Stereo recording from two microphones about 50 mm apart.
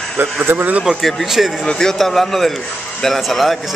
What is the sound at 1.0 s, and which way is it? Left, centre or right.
Speech, centre.